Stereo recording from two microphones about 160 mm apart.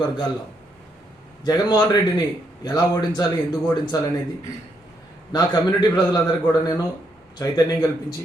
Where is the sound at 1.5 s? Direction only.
25° left (ahead or behind).